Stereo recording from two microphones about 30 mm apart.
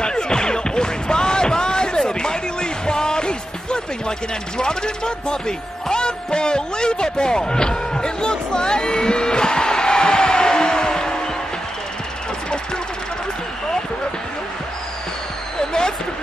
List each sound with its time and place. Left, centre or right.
0.0 s music: left
4.6 s speech: left